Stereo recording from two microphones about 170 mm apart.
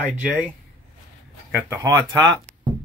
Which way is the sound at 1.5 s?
10° right (ahead or behind).